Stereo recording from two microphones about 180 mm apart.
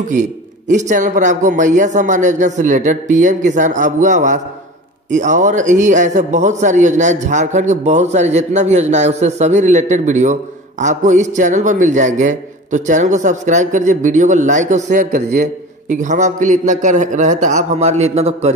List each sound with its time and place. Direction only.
0.1 s a man's voice: 45° right (ahead or behind)